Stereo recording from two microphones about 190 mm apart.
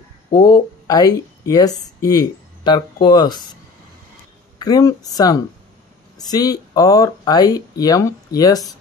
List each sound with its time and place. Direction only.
0.4 s speech: 20° left (ahead or behind)
4.6 s speech: 20° left (ahead or behind)